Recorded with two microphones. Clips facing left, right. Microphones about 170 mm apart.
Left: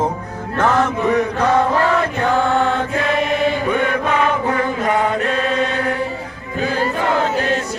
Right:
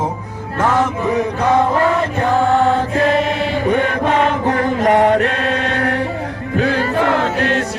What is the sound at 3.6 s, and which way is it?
Chant, 45° right (ahead or behind).